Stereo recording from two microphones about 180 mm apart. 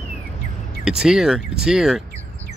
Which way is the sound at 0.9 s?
5° right (ahead or behind).